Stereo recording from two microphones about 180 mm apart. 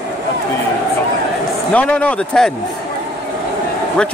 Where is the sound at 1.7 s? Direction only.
5° left (ahead or behind).